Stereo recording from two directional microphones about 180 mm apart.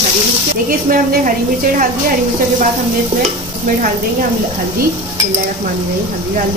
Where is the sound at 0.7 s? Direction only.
50° right (ahead or behind).